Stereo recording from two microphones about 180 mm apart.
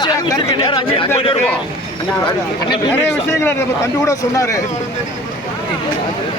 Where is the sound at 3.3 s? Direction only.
15° left (ahead or behind).